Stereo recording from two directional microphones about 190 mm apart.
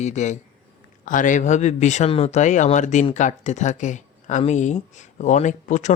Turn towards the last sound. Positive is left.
turn(degrees=40)  # may be behind; listen again after turning